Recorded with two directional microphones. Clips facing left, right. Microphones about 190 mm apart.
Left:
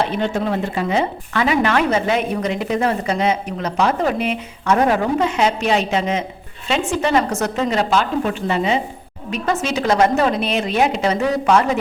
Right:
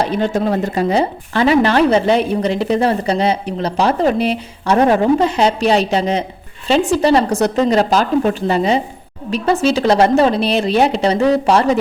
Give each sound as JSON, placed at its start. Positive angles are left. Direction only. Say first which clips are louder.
{"t": 0.0, "sound": "speech", "louder": "right 3 dB", "side_deg": -40}